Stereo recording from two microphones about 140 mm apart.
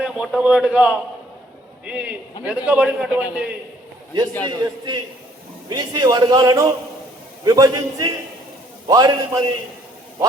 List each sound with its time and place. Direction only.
0.0 s a man's voice: 5° right (ahead or behind)
4.4 s a man's voice: 30° right (ahead or behind)